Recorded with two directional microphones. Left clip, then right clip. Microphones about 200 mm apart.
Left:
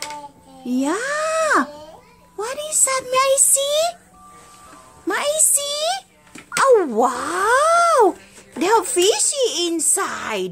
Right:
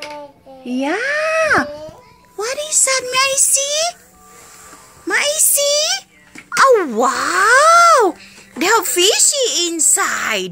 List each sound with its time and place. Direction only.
0.7 s a child's voice: 15° left (ahead or behind)
5.1 s a child's voice: 10° left (ahead or behind)